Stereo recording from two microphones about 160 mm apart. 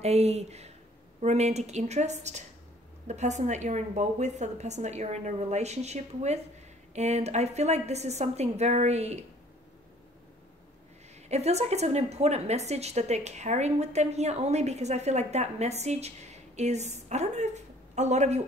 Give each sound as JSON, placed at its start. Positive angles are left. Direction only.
{"t": 0.0, "sound": "a woman's voice", "side_deg": -40}
{"t": 11.2, "sound": "a woman's voice", "side_deg": -45}